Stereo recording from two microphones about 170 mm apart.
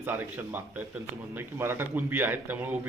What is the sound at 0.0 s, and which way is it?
A man's voice, 10° right (ahead or behind).